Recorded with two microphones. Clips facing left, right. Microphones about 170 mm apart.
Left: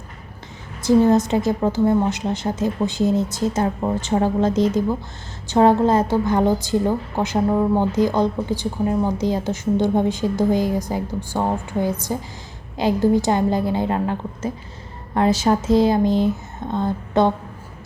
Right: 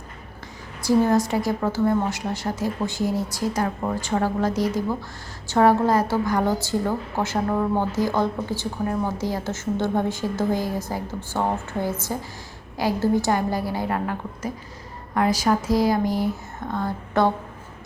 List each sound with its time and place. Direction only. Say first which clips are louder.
0.8 s a woman's voice: left 4 dB; 20° left (ahead or behind)